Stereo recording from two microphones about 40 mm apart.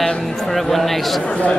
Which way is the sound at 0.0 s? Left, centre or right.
Centre.